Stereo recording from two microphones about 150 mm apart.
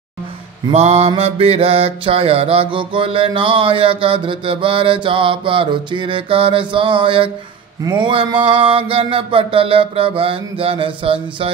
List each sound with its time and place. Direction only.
0.7 s mantra: 45° right (ahead or behind)